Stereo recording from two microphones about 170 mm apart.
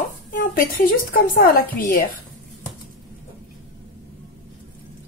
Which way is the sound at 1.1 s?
55° left (ahead or behind).